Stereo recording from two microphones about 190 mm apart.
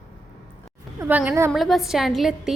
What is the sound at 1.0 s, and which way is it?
Speech, 10° right (ahead or behind).